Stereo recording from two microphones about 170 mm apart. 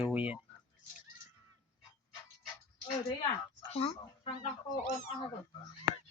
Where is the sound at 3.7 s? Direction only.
35° left (ahead or behind).